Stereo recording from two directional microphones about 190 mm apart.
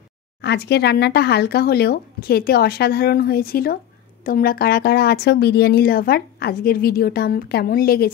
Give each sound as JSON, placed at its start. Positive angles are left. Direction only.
{"t": 0.4, "sound": "a woman's voice", "side_deg": 60}